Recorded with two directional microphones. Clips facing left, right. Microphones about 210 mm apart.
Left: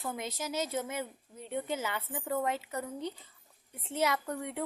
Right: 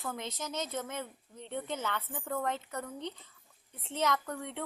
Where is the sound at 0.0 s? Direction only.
10° left (ahead or behind).